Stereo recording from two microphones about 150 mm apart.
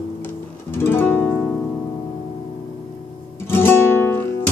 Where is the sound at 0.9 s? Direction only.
15° left (ahead or behind).